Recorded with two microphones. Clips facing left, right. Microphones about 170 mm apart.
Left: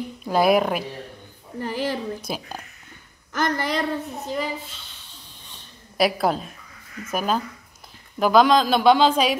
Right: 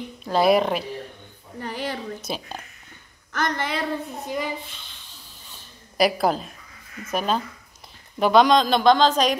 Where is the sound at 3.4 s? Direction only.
Centre (ahead or behind).